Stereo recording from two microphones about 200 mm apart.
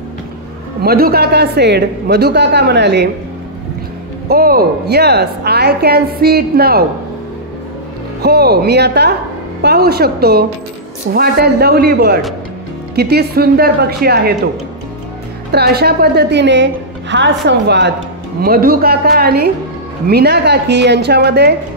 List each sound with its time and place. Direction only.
0.8 s a man's voice: 50° right (ahead or behind)
4.3 s a woman's voice: 50° right (ahead or behind)
8.2 s a man's voice: 55° right (ahead or behind)
15.5 s a man's voice: 50° right (ahead or behind)
18.4 s a woman's voice: 45° right (ahead or behind)